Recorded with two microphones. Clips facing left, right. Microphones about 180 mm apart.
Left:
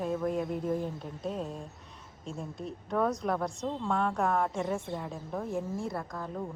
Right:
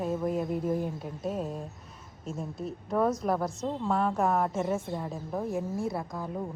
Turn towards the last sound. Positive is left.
turn(degrees=-10)  # may be behind; listen again after turning